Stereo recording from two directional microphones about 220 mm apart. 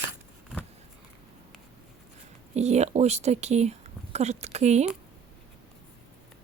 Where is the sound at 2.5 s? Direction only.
30° right (ahead or behind).